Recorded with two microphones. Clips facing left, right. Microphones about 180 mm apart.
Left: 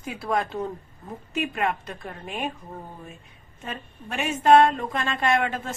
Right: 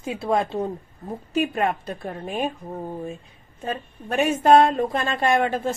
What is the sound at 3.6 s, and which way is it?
A woman's voice, 35° right (ahead or behind).